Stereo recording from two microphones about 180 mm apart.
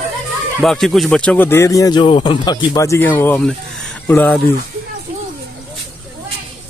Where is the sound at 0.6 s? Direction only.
Centre (ahead or behind).